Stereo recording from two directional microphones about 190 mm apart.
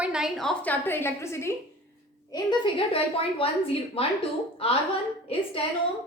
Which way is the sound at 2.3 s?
25° left (ahead or behind).